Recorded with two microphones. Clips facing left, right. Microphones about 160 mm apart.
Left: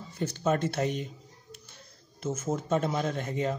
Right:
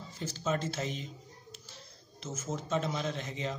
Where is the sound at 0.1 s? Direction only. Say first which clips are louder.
Left 6 dB; 60° left (ahead or behind).